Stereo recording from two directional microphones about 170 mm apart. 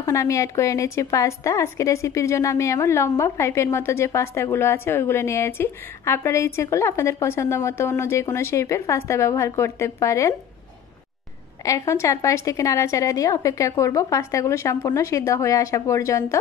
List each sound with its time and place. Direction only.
0.0 s a woman's voice: 20° left (ahead or behind)
11.6 s a woman's voice: 20° left (ahead or behind)